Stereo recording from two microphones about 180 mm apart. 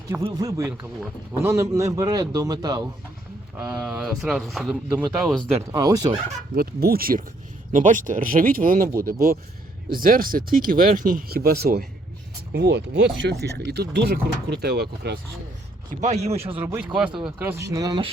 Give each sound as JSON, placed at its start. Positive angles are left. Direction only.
{"t": 0.2, "sound": "a man's voice", "side_deg": -25}
{"t": 3.6, "sound": "speech", "side_deg": -5}
{"t": 5.4, "sound": "speech", "side_deg": -20}
{"t": 6.6, "sound": "speech", "side_deg": -60}
{"t": 9.9, "sound": "speech", "side_deg": -50}
{"t": 12.5, "sound": "speech", "side_deg": -70}
{"t": 15.9, "sound": "a man's voice", "side_deg": -40}
{"t": 16.6, "sound": "a man's voice", "side_deg": -10}